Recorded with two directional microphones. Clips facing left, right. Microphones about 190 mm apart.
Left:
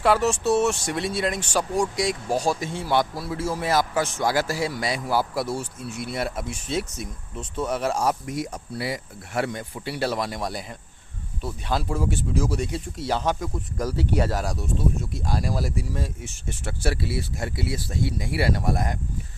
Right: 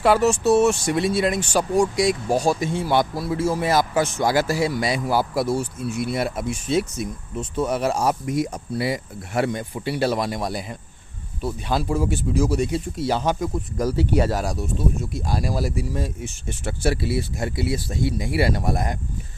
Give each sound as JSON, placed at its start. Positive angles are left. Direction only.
{"t": 0.0, "sound": "speech", "side_deg": -10}